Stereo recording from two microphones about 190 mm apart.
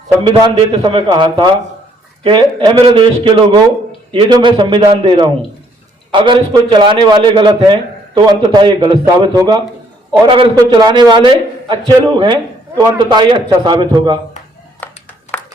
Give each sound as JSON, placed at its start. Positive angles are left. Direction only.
{"t": 0.3, "sound": "a man's voice", "side_deg": -25}
{"t": 4.1, "sound": "a man's voice", "side_deg": -25}
{"t": 14.8, "sound": "clapping", "side_deg": 10}
{"t": 15.3, "sound": "a sound", "side_deg": 10}